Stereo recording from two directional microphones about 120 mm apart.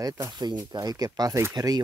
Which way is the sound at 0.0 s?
35° right (ahead or behind).